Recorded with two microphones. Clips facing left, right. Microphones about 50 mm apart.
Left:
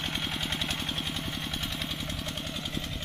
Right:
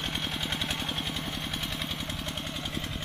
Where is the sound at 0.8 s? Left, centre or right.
Centre.